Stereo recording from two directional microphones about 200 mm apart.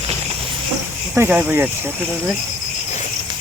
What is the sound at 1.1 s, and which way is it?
Speech, 10° right (ahead or behind).